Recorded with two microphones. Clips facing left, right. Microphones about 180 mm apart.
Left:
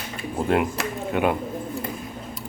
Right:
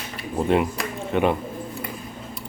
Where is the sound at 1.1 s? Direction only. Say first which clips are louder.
Right 2 dB; 5° left (ahead or behind).